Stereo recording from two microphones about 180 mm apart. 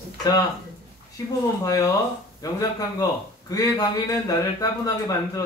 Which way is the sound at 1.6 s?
20° left (ahead or behind).